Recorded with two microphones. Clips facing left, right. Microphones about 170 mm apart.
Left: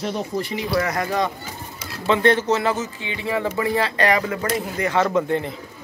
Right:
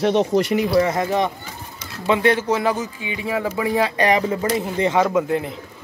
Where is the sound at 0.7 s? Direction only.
20° right (ahead or behind).